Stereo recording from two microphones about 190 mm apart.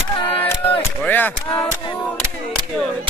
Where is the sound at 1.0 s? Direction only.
10° left (ahead or behind).